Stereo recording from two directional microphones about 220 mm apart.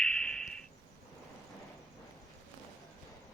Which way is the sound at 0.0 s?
5° left (ahead or behind).